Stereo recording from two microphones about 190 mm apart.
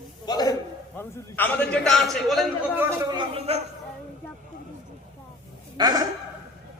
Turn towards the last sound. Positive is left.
turn(degrees=-20)  # may be behind; listen again after turning